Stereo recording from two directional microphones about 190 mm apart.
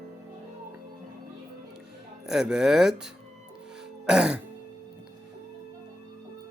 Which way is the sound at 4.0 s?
5° right (ahead or behind).